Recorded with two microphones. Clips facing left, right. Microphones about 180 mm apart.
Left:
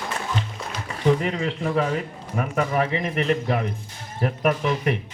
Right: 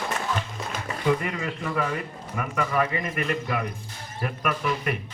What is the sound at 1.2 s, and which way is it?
A woman's voice, 25° left (ahead or behind).